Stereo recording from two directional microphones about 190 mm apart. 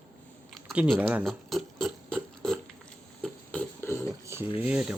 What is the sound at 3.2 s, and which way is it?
Beatboxing, 5° left (ahead or behind).